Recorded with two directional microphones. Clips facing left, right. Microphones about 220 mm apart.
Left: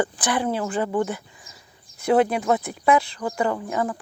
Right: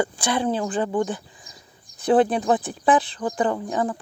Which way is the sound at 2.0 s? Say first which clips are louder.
Right 1 dB; 35° right (ahead or behind).